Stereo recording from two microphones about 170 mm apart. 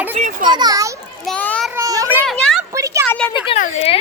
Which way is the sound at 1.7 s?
20° right (ahead or behind).